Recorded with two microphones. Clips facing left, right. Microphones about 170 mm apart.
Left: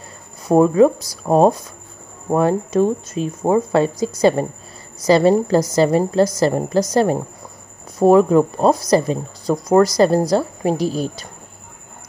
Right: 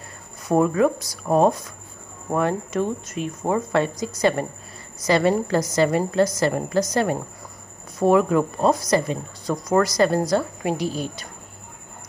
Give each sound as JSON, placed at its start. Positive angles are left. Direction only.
{"t": 0.4, "sound": "speech", "side_deg": 30}